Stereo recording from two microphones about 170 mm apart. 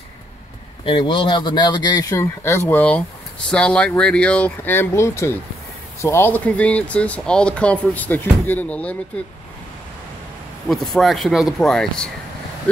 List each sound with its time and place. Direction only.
0.8 s speech: 30° left (ahead or behind); by 8.9 s 10° left (ahead or behind)
10.7 s speech: centre (ahead or behind)